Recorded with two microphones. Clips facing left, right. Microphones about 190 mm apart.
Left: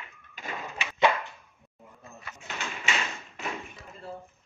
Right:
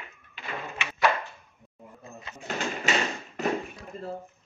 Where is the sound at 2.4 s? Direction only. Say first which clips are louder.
Right 7 dB; 40° right (ahead or behind).